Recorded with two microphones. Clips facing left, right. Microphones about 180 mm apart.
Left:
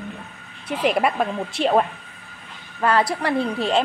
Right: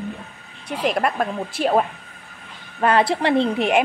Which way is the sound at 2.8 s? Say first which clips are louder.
Right 2 dB; 25° right (ahead or behind).